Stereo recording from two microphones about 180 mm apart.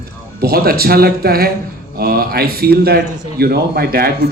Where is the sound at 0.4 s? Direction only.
55° right (ahead or behind).